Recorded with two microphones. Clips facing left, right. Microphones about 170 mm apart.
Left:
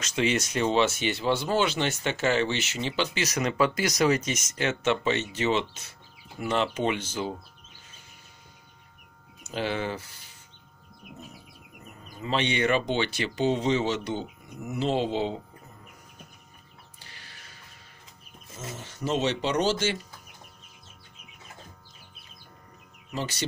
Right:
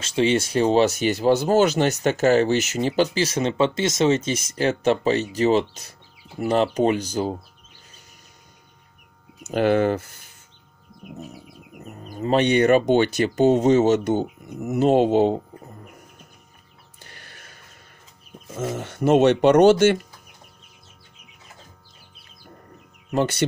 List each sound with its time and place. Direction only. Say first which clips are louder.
0.0 s speech: right 6 dB; 30° right (ahead or behind)
3.2 s speech: right 5 dB; 25° right (ahead or behind)
9.4 s speech: right 11 dB; 50° right (ahead or behind)
11.8 s speech: right 10 dB; 40° right (ahead or behind)
17.0 s music: right 7 dB; 55° right (ahead or behind)
18.5 s speech: right 12 dB; 55° right (ahead or behind)
23.1 s speech: right 11 dB; 55° right (ahead or behind)